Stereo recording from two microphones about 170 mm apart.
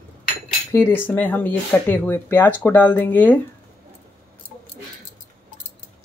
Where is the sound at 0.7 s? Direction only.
10° left (ahead or behind).